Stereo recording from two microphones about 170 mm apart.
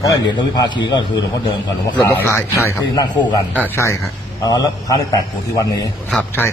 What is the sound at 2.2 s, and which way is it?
A man's voice, 15° left (ahead or behind).